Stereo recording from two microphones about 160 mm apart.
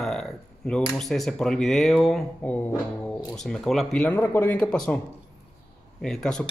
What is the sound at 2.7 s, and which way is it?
Music, 25° left (ahead or behind).